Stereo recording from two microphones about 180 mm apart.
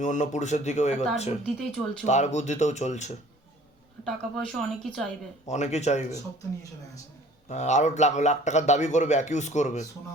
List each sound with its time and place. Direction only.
0.0 s a man's voice: 45° left (ahead or behind)
1.5 s a woman's voice: centre (ahead or behind)
2.0 s a man's voice: 40° left (ahead or behind)
4.0 s a woman's voice: centre (ahead or behind)
5.5 s a man's voice: 40° left (ahead or behind)
7.5 s a man's voice: 40° left (ahead or behind)